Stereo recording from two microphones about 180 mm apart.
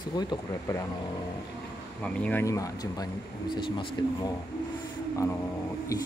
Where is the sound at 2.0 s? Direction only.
10° left (ahead or behind); by 4.3 s 25° left (ahead or behind).